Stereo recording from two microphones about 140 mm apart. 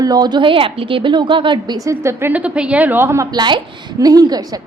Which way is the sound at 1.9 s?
15° right (ahead or behind).